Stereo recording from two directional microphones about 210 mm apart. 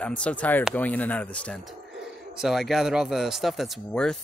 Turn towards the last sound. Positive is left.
turn(degrees=5)  # may be behind; listen again after turning